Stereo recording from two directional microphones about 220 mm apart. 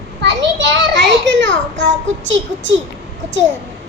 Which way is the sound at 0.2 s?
50° right (ahead or behind).